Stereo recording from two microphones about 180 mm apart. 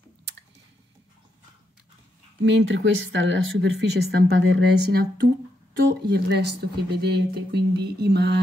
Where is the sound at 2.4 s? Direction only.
75° right (ahead or behind).